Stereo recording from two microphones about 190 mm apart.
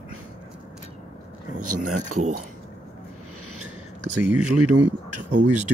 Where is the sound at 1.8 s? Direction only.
40° right (ahead or behind).